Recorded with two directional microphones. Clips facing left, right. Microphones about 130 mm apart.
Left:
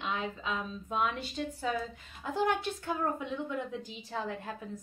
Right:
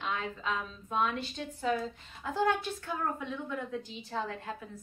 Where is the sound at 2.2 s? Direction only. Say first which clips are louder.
Even; 15° left (ahead or behind).